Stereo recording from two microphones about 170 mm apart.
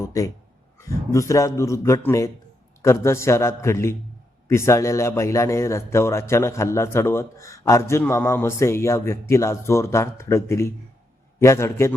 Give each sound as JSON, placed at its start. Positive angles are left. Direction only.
{"t": 0.0, "sound": "a man's voice", "side_deg": 20}